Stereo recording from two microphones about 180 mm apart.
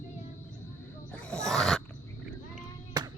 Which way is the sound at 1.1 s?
5° left (ahead or behind).